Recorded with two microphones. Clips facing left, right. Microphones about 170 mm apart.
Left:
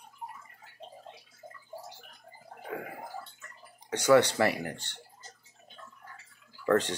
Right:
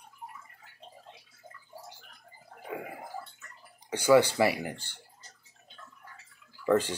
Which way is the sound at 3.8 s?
5° right (ahead or behind).